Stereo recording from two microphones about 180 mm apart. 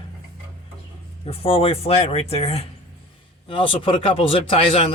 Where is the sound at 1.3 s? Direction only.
30° left (ahead or behind).